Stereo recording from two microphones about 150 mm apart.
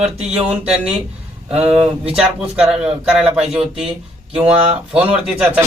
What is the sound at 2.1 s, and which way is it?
Speech, 5° right (ahead or behind).